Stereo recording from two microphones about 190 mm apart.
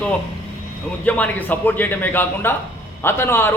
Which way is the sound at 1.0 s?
10° left (ahead or behind).